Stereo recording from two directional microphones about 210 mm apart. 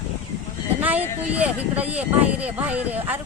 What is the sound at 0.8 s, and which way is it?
Speech, 10° right (ahead or behind).